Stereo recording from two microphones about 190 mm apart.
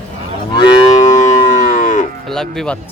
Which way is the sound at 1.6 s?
45° left (ahead or behind).